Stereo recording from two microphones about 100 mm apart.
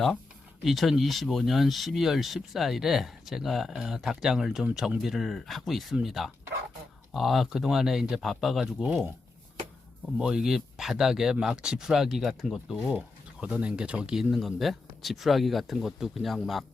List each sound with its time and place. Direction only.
0.6 s speech: centre (ahead or behind)
10.2 s speech: 10° right (ahead or behind)